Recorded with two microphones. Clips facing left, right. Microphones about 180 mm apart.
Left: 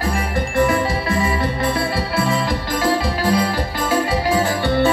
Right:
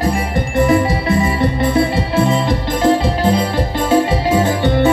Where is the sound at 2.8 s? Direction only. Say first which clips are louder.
Right 6 dB; 25° right (ahead or behind).